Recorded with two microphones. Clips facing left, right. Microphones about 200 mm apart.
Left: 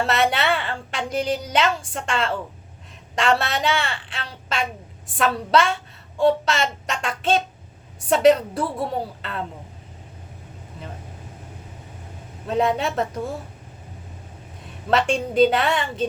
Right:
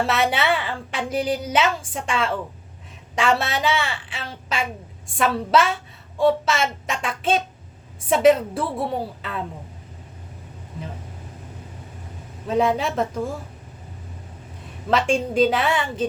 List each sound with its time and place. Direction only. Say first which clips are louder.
0.1 s a woman's voice: even; centre (ahead or behind)
12.5 s a woman's voice: right 1 dB; centre (ahead or behind)
14.8 s a woman's voice: even; centre (ahead or behind)